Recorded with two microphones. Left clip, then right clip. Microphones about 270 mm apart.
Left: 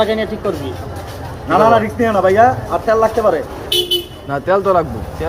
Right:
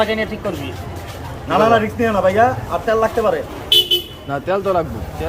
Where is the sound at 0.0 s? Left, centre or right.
Right.